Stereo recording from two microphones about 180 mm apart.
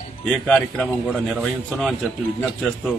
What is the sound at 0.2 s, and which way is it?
Speech, 5° left (ahead or behind).